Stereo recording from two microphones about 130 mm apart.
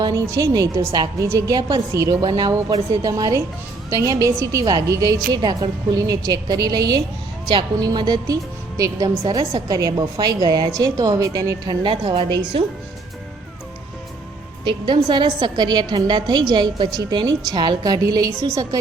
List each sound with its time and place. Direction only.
0.0 s a woman's voice: 25° right (ahead or behind)
14.6 s a woman's voice: 40° right (ahead or behind)